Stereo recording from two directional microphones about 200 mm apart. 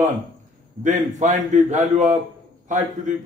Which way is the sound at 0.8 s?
40° right (ahead or behind).